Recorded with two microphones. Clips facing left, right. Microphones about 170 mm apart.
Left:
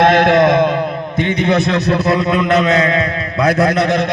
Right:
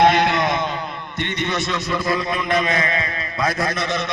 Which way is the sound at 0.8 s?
55° left (ahead or behind).